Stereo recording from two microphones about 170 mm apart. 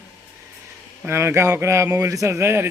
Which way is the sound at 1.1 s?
15° right (ahead or behind).